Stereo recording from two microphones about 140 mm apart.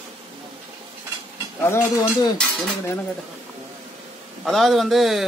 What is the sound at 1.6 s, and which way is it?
Speech, 20° left (ahead or behind).